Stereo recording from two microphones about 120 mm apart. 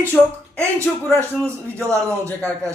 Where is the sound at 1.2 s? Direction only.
25° right (ahead or behind).